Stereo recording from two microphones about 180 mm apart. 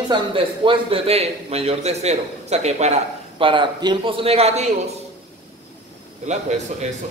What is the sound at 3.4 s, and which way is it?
A man's voice, 25° right (ahead or behind).